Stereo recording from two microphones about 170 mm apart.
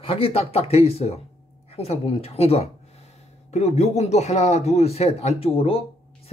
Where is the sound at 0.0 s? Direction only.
35° left (ahead or behind).